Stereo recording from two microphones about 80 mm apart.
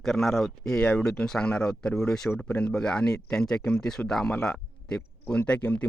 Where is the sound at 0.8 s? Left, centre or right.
Centre.